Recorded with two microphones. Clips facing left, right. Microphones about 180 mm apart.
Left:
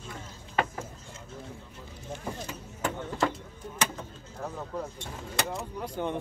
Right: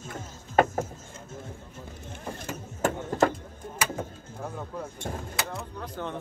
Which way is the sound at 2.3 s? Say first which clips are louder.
Right 2 dB; 50° right (ahead or behind).